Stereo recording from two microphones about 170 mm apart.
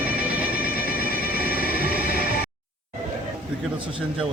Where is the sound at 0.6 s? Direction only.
60° left (ahead or behind).